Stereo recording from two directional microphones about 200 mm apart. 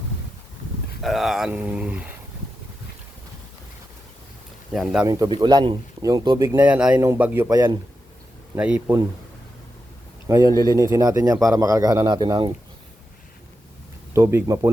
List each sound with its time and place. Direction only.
1.0 s speech: centre (ahead or behind)
4.7 s speech: 5° right (ahead or behind)
5.0 s speech: 15° right (ahead or behind)
6.6 s speech: 5° right (ahead or behind)
8.5 s speech: 5° right (ahead or behind)
10.2 s speech: 15° right (ahead or behind)
14.1 s speech: 15° right (ahead or behind)